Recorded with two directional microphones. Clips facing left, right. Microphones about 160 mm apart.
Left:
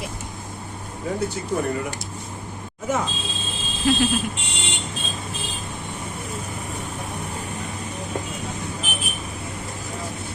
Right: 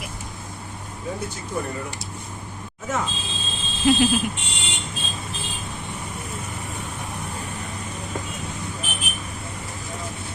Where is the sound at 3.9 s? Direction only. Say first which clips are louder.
Right 2 dB; 15° right (ahead or behind).